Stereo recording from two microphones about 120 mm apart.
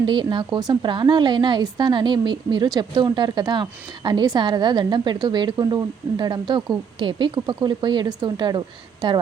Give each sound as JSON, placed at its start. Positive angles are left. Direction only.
{"t": 0.0, "sound": "a woman's voice", "side_deg": -40}